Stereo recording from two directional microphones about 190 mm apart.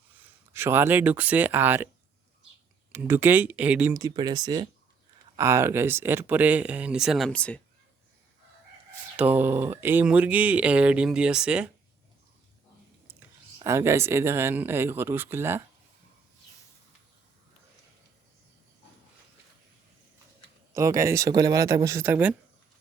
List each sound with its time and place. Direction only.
0.1 s speech: 10° right (ahead or behind)
2.9 s speech: 10° right (ahead or behind)
3.9 s speech: 20° right (ahead or behind); by 7.6 s 5° left (ahead or behind)
9.1 s speech: 10° right (ahead or behind)
13.7 s speech: 15° right (ahead or behind)
20.7 s speech: 15° right (ahead or behind)